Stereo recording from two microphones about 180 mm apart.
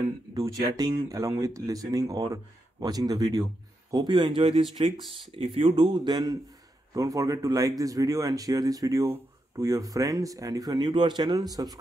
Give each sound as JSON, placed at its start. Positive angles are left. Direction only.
{"t": 0.3, "sound": "speech", "side_deg": -20}